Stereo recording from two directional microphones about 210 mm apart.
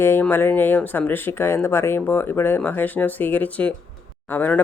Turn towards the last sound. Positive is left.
turn(degrees=10)  # may be behind; listen again after turning